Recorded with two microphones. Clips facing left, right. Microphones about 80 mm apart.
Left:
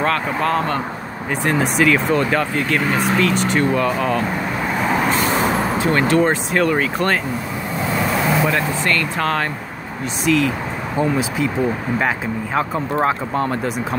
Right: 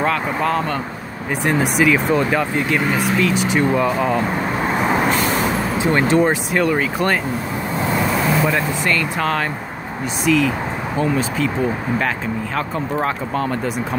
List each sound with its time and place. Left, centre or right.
0.0 s speech: centre
4.6 s vehicle: centre
5.1 s vehicle: left
5.8 s speech: centre
6.5 s speech: centre
8.0 s vehicle: centre
8.5 s speech: centre
13.0 s speech: centre